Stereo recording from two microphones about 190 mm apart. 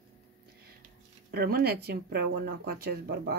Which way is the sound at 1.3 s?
55° right (ahead or behind).